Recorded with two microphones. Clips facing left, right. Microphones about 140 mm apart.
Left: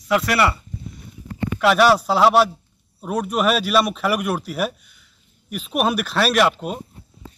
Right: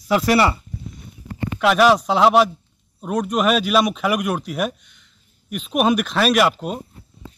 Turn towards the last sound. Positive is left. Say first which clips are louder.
# right 1 dB
turn(degrees=0)  # may be behind; listen again after turning